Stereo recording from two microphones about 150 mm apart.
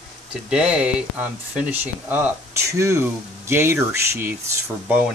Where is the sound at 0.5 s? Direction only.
10° right (ahead or behind).